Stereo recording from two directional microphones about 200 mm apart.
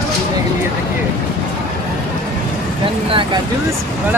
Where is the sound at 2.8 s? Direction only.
25° right (ahead or behind).